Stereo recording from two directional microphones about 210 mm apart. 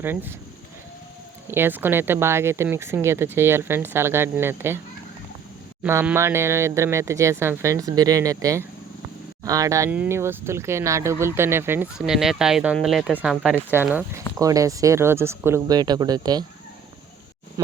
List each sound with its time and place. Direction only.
0.0 s speech: 10° right (ahead or behind)
1.5 s speech: 10° right (ahead or behind)
5.8 s speech: 10° right (ahead or behind)